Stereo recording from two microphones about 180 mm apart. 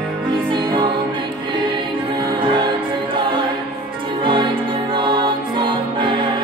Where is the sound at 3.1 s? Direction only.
25° right (ahead or behind).